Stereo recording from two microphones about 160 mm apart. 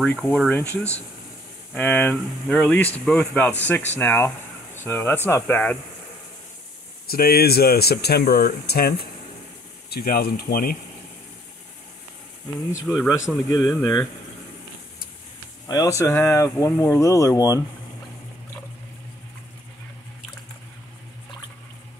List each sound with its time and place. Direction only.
0.0 s speech: 10° left (ahead or behind)
7.1 s speech: 70° left (ahead or behind)
12.9 s speech: 20° left (ahead or behind)
15.6 s speech: 20° left (ahead or behind)